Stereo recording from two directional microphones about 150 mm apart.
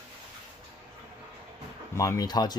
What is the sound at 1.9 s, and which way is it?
Speech, 20° left (ahead or behind).